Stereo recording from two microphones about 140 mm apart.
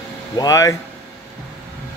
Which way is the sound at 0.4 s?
25° left (ahead or behind).